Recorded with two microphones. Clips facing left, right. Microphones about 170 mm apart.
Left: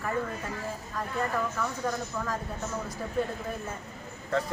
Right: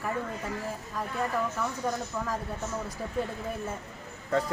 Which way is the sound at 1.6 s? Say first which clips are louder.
Even; 10° right (ahead or behind).